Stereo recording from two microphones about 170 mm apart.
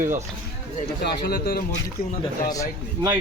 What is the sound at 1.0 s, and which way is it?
Speech, 65° left (ahead or behind).